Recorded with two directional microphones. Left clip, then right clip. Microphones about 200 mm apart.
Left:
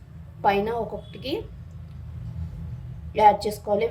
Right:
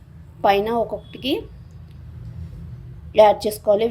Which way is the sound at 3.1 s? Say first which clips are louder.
Right 4 dB; 35° right (ahead or behind).